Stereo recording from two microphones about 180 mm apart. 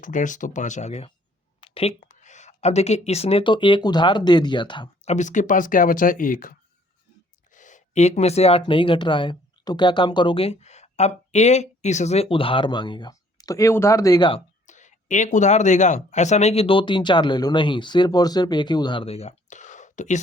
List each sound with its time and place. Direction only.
0.0 s speech: 45° left (ahead or behind); by 5.1 s 25° left (ahead or behind)
5.1 s speech: 45° left (ahead or behind); by 14.4 s 25° left (ahead or behind)
14.7 s speech: 45° left (ahead or behind)